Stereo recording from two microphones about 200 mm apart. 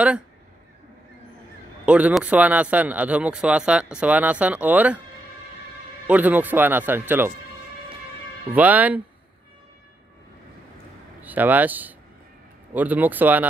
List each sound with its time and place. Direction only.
1.9 s speech: 5° right (ahead or behind)
6.0 s speech: 10° right (ahead or behind)
8.5 s speech: 10° right (ahead or behind)
11.2 s speech: 10° right (ahead or behind)